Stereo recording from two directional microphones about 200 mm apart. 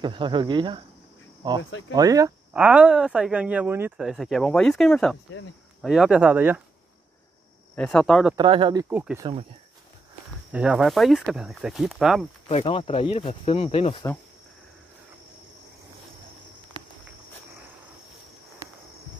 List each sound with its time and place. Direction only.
0.0 s speech: 25° right (ahead or behind)
1.6 s speech: 75° left (ahead or behind)
2.0 s speech: 15° right (ahead or behind)
2.5 s speech: 5° right (ahead or behind)
7.7 s speech: 5° left (ahead or behind)
8.4 s speech: 25° right (ahead or behind)
8.8 s speech: 10° right (ahead or behind)
9.2 s speech: 30° right (ahead or behind)
10.5 s speech: 5° right (ahead or behind)
12.4 s speech: 30° left (ahead or behind)